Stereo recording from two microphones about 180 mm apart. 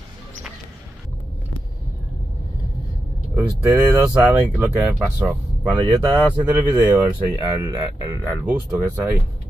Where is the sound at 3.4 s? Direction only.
10° right (ahead or behind).